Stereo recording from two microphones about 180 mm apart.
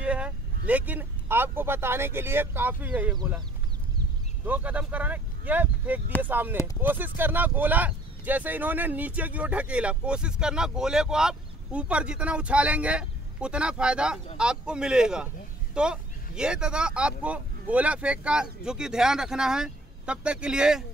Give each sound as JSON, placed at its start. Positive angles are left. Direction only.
{"t": 0.0, "sound": "speech", "side_deg": -5}
{"t": 4.5, "sound": "speech", "side_deg": -10}
{"t": 6.5, "sound": "speech", "side_deg": 15}
{"t": 6.8, "sound": "speech", "side_deg": -10}